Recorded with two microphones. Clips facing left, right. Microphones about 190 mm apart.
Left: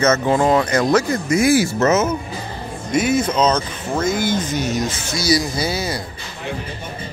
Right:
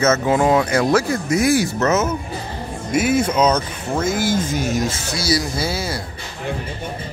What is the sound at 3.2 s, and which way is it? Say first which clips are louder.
Speech: even; 10° right (ahead or behind).